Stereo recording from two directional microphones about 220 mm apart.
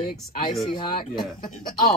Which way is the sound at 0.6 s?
20° left (ahead or behind).